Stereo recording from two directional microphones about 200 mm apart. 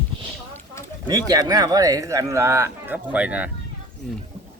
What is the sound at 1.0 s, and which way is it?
Speech, 20° right (ahead or behind).